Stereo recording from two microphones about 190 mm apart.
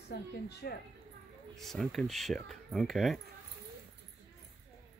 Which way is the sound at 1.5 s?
Centre (ahead or behind).